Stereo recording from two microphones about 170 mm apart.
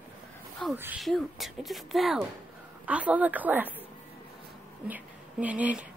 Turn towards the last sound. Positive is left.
turn(degrees=-10)  # may be behind; listen again after turning